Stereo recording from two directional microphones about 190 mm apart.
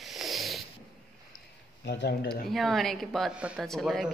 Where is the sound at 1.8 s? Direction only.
60° left (ahead or behind).